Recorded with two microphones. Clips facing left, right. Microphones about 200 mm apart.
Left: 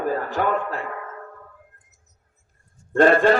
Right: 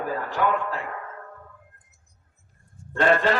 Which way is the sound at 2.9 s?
45° left (ahead or behind).